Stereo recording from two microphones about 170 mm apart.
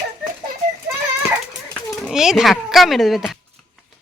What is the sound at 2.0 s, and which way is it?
A child's voice, centre (ahead or behind).